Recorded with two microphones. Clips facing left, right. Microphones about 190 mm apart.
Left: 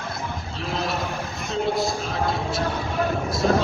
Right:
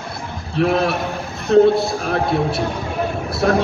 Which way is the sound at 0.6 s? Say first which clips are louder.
Right 11 dB; 65° right (ahead or behind).